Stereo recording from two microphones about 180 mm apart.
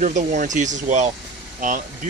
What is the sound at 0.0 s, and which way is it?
Speech, 45° right (ahead or behind).